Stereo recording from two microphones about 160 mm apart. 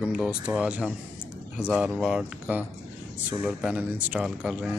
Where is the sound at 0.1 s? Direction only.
5° right (ahead or behind).